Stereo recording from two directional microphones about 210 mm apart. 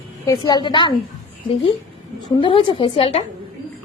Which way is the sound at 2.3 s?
25° left (ahead or behind).